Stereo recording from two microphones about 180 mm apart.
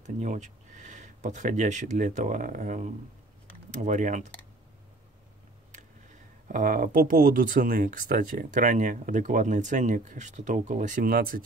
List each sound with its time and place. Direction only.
0.0 s speech: 40° right (ahead or behind)
6.5 s speech: 45° right (ahead or behind)